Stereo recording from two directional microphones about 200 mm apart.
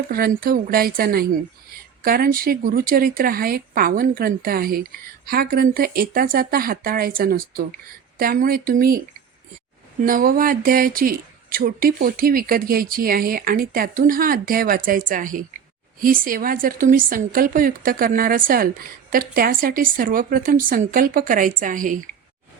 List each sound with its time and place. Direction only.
0.1 s a woman's voice: 50° right (ahead or behind)
10.0 s a woman's voice: 45° right (ahead or behind)